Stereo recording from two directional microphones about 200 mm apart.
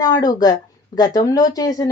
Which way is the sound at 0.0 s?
20° left (ahead or behind).